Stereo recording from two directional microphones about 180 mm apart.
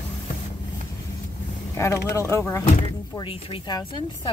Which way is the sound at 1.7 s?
15° left (ahead or behind).